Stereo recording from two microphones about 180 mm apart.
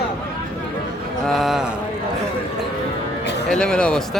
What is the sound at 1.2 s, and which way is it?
Speech, centre (ahead or behind).